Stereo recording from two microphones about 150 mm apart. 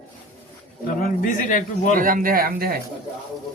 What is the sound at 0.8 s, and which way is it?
Speech, 70° left (ahead or behind).